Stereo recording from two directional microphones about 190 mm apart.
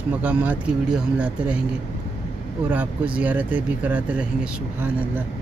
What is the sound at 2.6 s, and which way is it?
Speech, 10° right (ahead or behind).